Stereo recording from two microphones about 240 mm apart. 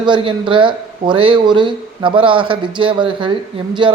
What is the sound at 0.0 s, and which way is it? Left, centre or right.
A man's voice, centre.